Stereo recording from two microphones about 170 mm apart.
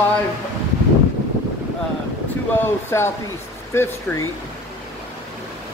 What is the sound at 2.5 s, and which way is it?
Speech, 15° left (ahead or behind).